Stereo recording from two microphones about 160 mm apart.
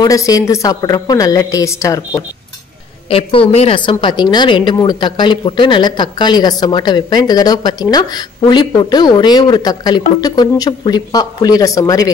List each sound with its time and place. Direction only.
0.0 s a woman's voice: 20° left (ahead or behind)
3.1 s a woman's voice: 35° left (ahead or behind)